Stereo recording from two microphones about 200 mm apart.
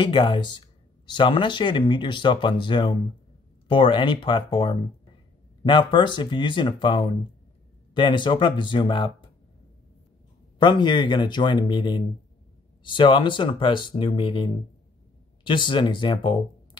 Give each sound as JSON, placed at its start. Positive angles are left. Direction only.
{"t": 0.0, "sound": "speech", "side_deg": 25}
{"t": 10.6, "sound": "speech", "side_deg": 20}